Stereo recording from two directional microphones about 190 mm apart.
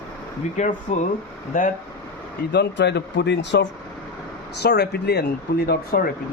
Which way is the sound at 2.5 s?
60° left (ahead or behind).